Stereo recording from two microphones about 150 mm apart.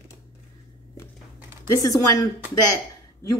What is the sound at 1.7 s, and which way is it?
Speech, 25° left (ahead or behind).